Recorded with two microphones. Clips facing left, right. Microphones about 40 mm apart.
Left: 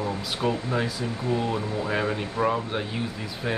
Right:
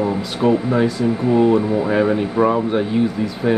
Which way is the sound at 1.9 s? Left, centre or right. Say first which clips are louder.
Right 10 dB; centre.